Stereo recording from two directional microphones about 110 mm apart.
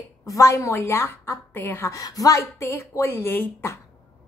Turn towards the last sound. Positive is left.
turn(degrees=20)  # may be behind; listen again after turning